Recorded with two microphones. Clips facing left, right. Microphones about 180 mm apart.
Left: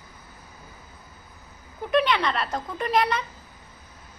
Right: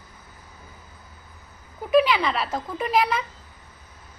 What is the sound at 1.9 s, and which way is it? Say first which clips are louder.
Speech: right 3 dB; 5° right (ahead or behind).